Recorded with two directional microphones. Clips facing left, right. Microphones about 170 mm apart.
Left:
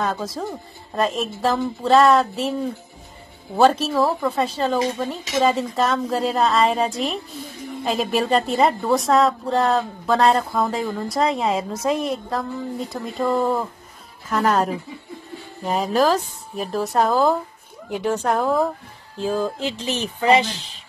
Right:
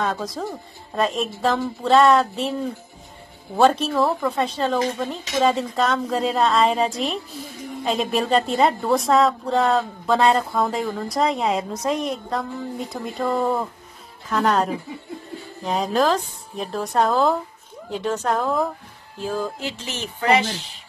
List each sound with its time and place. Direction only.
0.0 s speech: centre (ahead or behind)
3.5 s speech: centre (ahead or behind)
17.8 s a sound: 10° left (ahead or behind)